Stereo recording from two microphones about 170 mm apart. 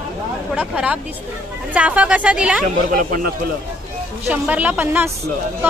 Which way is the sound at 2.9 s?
55° right (ahead or behind).